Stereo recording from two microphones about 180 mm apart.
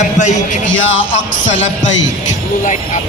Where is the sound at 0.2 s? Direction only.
45° left (ahead or behind).